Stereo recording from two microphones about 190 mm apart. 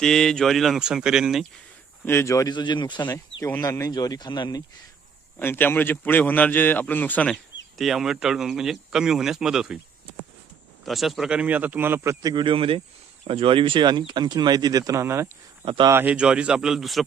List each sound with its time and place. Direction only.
0.0 s speech: 5° left (ahead or behind)
2.0 s speech: 15° left (ahead or behind)
5.4 s a man's voice: 10° left (ahead or behind)
10.8 s a man's voice: centre (ahead or behind)
15.6 s speech: 30° right (ahead or behind)
15.9 s speech: 10° right (ahead or behind)